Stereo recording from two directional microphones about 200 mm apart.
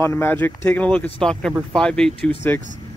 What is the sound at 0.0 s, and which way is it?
Speech, 10° left (ahead or behind).